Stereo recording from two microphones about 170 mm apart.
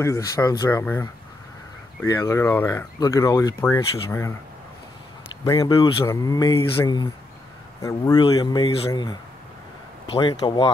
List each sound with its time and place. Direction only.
0.0 s speech: 15° left (ahead or behind)
5.4 s speech: 20° left (ahead or behind)